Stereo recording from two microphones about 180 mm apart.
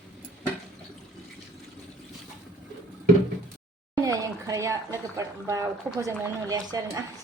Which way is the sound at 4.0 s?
20° right (ahead or behind).